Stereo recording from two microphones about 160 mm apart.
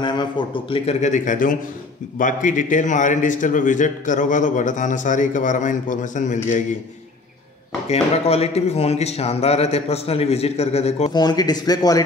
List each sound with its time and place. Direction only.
0.0 s a man's voice: 30° left (ahead or behind); by 6.6 s 50° left (ahead or behind)
7.9 s speech: 40° left (ahead or behind)
11.1 s speech: 25° left (ahead or behind)